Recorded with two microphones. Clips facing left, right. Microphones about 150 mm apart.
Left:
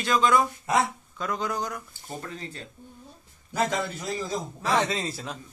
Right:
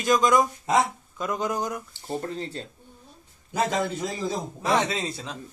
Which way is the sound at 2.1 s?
30° right (ahead or behind).